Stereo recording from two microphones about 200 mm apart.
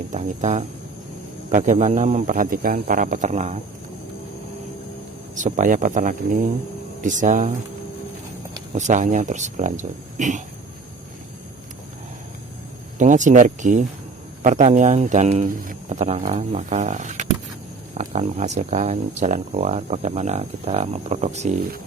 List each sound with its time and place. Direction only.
0.1 s speech: 35° right (ahead or behind)
5.3 s speech: 40° right (ahead or behind)
8.7 s speech: 40° right (ahead or behind)
13.0 s speech: 40° right (ahead or behind)